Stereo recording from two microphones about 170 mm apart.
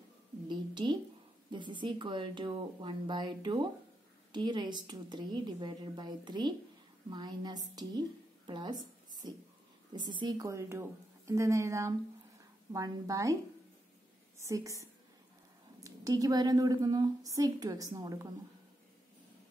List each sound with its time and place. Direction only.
0.5 s a sound: 25° right (ahead or behind)
1.5 s a woman's voice: 25° right (ahead or behind)
14.4 s speech: 20° right (ahead or behind)